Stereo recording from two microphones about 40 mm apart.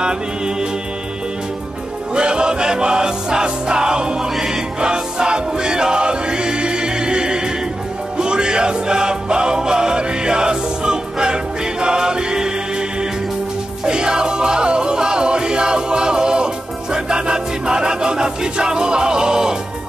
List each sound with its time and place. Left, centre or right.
2.1 s music: right
13.8 s music: right